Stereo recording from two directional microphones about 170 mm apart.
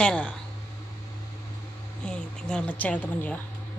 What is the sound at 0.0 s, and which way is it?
Speech, 5° left (ahead or behind).